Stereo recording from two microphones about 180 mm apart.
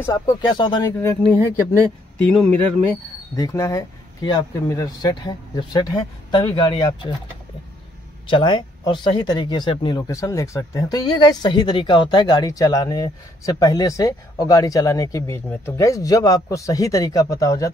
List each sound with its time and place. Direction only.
0.0 s speech: 20° left (ahead or behind)
2.3 s speech: 5° left (ahead or behind)
3.3 s speech: 20° left (ahead or behind)
8.3 s speech: 25° left (ahead or behind)